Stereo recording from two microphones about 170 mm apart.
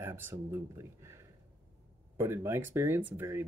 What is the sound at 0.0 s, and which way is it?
Speech, 15° right (ahead or behind).